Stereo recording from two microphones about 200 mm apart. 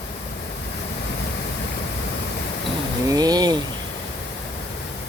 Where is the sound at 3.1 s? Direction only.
20° right (ahead or behind).